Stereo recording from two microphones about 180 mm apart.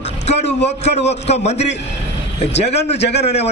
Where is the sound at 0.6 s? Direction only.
35° left (ahead or behind).